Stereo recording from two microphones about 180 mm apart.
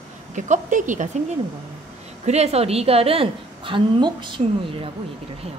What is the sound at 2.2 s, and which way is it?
Speech, 35° right (ahead or behind).